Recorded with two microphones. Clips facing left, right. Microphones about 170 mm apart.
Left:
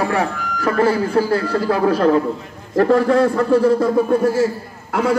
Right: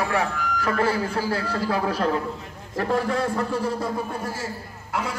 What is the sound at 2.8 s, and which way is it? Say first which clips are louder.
A man's voice: left 10 dB; 90° left.